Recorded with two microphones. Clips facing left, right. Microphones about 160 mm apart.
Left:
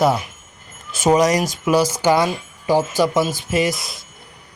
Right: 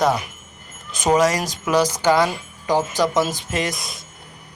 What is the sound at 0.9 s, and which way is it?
Speech, 10° left (ahead or behind).